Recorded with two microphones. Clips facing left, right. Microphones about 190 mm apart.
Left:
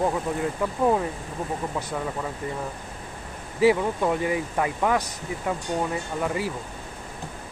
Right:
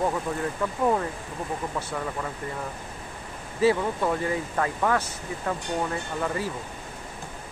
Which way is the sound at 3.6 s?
15° left (ahead or behind).